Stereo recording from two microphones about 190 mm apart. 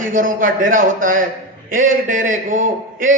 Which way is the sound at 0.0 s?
45° right (ahead or behind).